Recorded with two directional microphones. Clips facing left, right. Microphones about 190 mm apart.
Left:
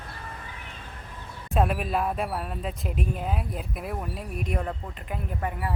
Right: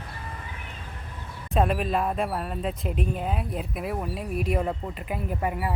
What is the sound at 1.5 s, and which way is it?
Speech, centre (ahead or behind).